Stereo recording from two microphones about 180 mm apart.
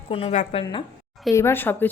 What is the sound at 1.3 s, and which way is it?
Speech, 15° left (ahead or behind).